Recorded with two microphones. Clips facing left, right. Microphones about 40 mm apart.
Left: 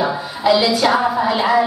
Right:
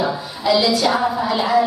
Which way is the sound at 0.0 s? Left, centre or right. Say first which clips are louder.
Left 3 dB; centre.